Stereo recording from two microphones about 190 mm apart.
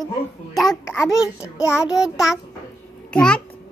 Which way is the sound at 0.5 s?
Centre (ahead or behind).